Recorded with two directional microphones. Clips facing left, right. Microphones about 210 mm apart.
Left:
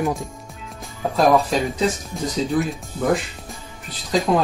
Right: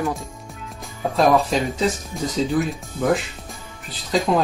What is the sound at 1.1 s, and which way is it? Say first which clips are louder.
Speech: left 1 dB; centre (ahead or behind).